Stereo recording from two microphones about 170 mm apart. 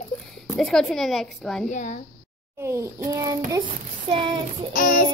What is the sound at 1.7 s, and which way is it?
Speech, 45° left (ahead or behind).